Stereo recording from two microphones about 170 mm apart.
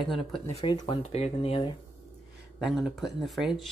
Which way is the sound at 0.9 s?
40° left (ahead or behind).